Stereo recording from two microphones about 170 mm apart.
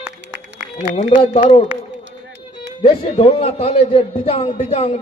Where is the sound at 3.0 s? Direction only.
35° left (ahead or behind).